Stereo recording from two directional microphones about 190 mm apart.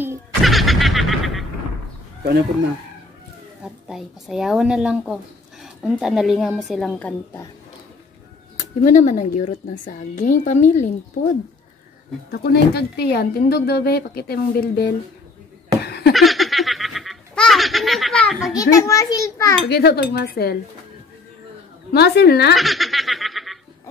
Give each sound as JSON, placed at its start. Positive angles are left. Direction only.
{"t": 0.4, "sound": "a woman's voice", "side_deg": 0}
{"t": 3.6, "sound": "a woman's voice", "side_deg": 0}
{"t": 8.8, "sound": "a woman's voice", "side_deg": 40}
{"t": 12.3, "sound": "a woman's voice", "side_deg": 60}
{"t": 15.8, "sound": "a sound", "side_deg": 55}
{"t": 16.1, "sound": "a sound", "side_deg": 0}
{"t": 18.5, "sound": "a child's voice", "side_deg": 15}
{"t": 19.7, "sound": "a woman's voice", "side_deg": 60}
{"t": 21.9, "sound": "a woman's voice", "side_deg": 60}
{"t": 22.6, "sound": "snicker", "side_deg": 0}